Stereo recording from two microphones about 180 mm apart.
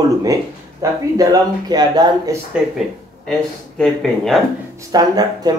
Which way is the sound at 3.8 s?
Centre (ahead or behind).